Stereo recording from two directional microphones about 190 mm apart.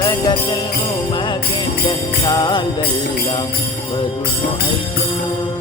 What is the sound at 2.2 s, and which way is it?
Jingle bell, 20° left (ahead or behind).